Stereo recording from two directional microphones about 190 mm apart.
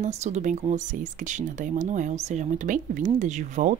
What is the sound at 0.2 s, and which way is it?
Speech, 40° right (ahead or behind).